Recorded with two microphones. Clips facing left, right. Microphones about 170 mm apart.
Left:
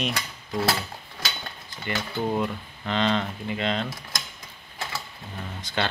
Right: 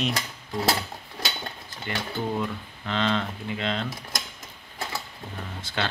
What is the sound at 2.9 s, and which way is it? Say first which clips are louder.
Speech: left 1 dB; 5° left (ahead or behind).